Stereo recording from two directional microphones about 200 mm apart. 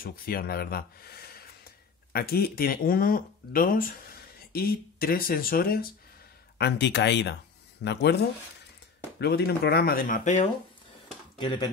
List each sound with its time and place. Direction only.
0.0 s speech: 45° left (ahead or behind)
6.6 s speech: 60° left (ahead or behind)
9.2 s speech: 55° left (ahead or behind); by 10.5 s 35° left (ahead or behind)
11.3 s speech: 25° left (ahead or behind)